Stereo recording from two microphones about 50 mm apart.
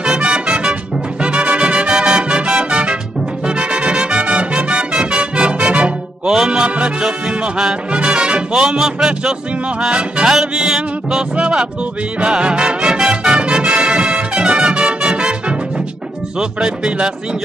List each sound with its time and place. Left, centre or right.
0.0 s music: centre
6.2 s music: centre
10.2 s music: centre